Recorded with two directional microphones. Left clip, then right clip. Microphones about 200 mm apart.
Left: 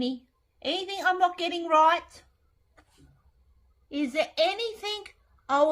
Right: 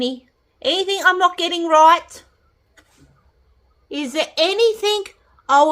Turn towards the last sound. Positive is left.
turn(degrees=-45)  # may be behind; listen again after turning